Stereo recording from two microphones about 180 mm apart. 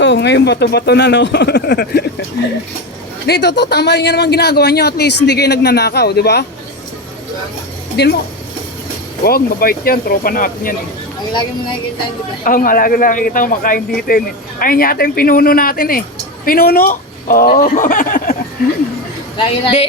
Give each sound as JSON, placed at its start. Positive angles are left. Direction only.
{"t": 0.0, "sound": "speech", "side_deg": 80}
{"t": 8.0, "sound": "speech", "side_deg": 65}
{"t": 9.2, "sound": "speech", "side_deg": 55}
{"t": 12.5, "sound": "a man's voice", "side_deg": 50}
{"t": 19.4, "sound": "a woman's voice", "side_deg": 30}